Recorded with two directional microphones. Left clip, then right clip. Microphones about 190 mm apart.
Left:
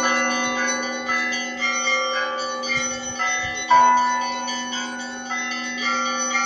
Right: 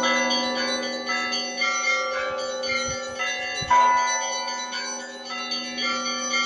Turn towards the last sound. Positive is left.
turn(degrees=10)  # may be behind; listen again after turning